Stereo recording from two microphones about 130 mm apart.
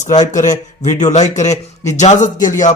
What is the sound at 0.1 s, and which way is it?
A man's voice, 70° left (ahead or behind).